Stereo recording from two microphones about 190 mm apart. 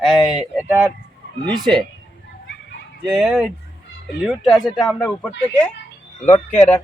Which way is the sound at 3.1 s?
5° right (ahead or behind).